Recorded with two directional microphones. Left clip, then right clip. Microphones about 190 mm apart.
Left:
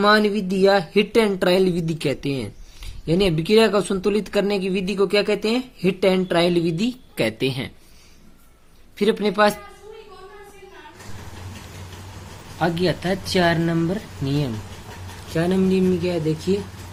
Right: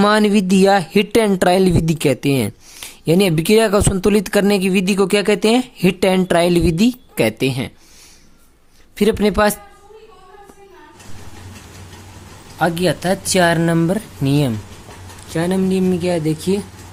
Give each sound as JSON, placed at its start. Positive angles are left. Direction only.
{"t": 0.0, "sound": "speech", "side_deg": -50}
{"t": 9.0, "sound": "speech", "side_deg": -40}
{"t": 12.5, "sound": "speech", "side_deg": -35}